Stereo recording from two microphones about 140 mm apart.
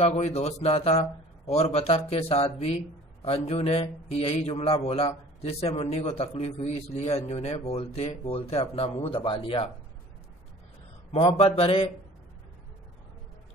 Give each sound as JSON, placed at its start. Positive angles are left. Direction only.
{"t": 0.0, "sound": "speech", "side_deg": 50}
{"t": 11.1, "sound": "speech", "side_deg": 45}